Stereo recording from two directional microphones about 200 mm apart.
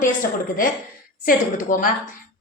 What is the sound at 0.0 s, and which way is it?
A woman's voice, 45° left (ahead or behind).